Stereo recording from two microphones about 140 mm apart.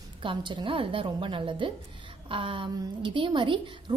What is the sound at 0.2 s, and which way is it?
A woman's voice, 35° right (ahead or behind).